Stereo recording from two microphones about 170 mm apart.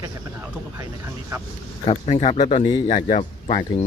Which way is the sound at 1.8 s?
40° left (ahead or behind).